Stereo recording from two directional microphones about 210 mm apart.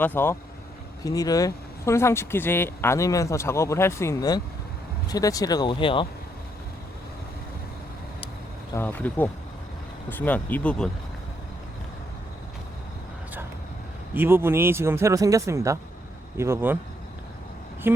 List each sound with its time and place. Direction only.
0.0 s speech: 10° left (ahead or behind)
8.7 s speech: 10° left (ahead or behind)
14.1 s speech: 10° right (ahead or behind)
17.8 s a sound: 10° right (ahead or behind)